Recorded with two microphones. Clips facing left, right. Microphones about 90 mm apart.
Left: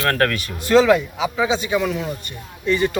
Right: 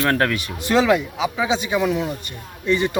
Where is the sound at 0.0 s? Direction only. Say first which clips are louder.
Even; 10° right (ahead or behind).